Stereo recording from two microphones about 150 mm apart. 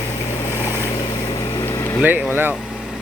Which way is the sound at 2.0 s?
15° right (ahead or behind).